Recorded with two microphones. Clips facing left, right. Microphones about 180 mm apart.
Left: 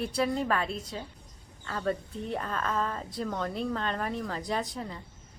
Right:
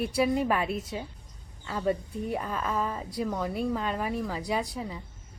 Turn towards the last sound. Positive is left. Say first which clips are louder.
# right 2 dB
turn(degrees=-10)  # may be behind; listen again after turning